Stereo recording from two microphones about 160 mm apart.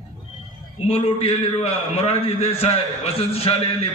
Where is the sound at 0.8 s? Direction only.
40° left (ahead or behind).